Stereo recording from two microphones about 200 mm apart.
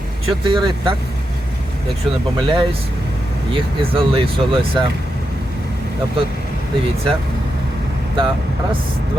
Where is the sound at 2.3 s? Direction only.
25° right (ahead or behind).